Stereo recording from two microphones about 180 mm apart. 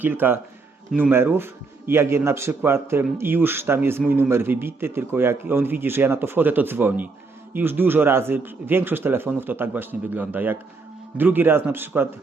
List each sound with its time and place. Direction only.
0.0 s a man's voice: 10° right (ahead or behind)